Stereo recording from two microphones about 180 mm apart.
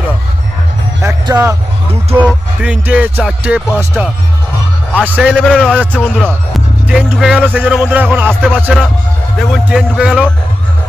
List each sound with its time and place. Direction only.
1.0 s music: 15° right (ahead or behind)
2.1 s speech: 5° right (ahead or behind)
5.9 s speech: 5° left (ahead or behind)
6.9 s speech: 5° right (ahead or behind)